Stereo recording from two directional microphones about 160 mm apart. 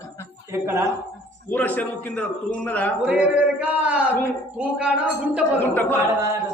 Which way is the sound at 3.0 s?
10° right (ahead or behind).